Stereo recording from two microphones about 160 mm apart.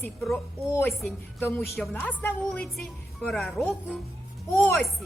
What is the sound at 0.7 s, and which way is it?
A woman's voice, 15° left (ahead or behind).